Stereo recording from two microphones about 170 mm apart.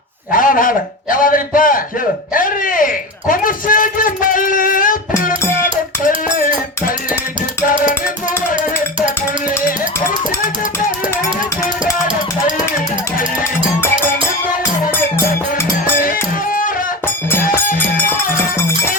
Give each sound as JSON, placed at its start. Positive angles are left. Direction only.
{"t": 0.3, "sound": "a sound", "side_deg": 55}
{"t": 1.1, "sound": "a man's voice", "side_deg": 55}
{"t": 2.3, "sound": "a sound", "side_deg": 55}
{"t": 5.5, "sound": "music", "side_deg": 50}
{"t": 8.5, "sound": "music", "side_deg": -30}
{"t": 16.5, "sound": "music", "side_deg": 55}
{"t": 17.7, "sound": "music", "side_deg": 10}